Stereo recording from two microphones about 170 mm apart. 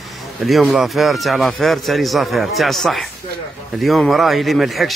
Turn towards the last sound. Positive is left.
turn(degrees=0)  # may be behind; listen again after turning